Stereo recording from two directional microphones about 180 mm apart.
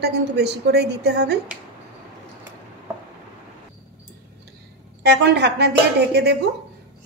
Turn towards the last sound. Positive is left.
turn(degrees=-70)  # may be behind; listen again after turning